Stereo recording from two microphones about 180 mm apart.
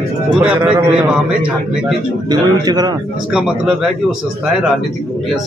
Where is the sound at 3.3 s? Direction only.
5° right (ahead or behind).